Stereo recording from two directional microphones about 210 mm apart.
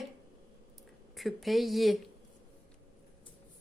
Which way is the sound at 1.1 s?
Centre (ahead or behind).